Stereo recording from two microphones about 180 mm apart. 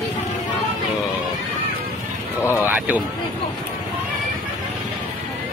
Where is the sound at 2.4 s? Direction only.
20° left (ahead or behind).